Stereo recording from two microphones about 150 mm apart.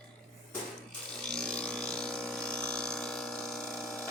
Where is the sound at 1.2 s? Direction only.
5° left (ahead or behind).